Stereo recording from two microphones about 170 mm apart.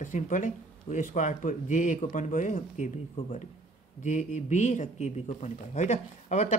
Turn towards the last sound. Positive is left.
turn(degrees=45)  # may be behind; listen again after turning